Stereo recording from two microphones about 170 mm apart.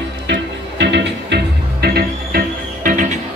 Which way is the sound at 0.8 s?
90° right.